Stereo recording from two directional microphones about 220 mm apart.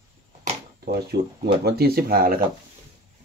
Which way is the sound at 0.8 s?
45° right (ahead or behind).